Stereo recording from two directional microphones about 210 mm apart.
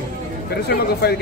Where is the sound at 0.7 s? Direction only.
50° left (ahead or behind).